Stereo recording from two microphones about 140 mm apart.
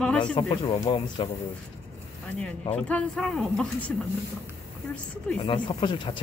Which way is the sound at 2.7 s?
5° left (ahead or behind).